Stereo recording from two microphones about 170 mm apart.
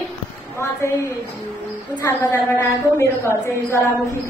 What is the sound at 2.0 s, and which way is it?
A woman's voice, 15° left (ahead or behind).